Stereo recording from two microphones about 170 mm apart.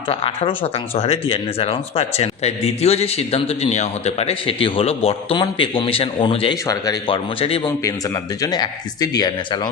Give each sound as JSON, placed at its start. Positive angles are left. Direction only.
{"t": 0.1, "sound": "speech", "side_deg": 35}
{"t": 7.9, "sound": "speech", "side_deg": 20}